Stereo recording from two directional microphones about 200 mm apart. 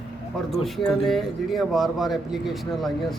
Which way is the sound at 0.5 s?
Centre (ahead or behind).